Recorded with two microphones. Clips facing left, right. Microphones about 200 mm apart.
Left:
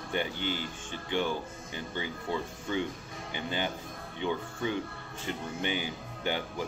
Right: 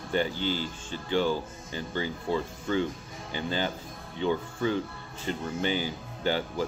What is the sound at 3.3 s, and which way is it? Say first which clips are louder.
Speech: right 3 dB; 15° left (ahead or behind).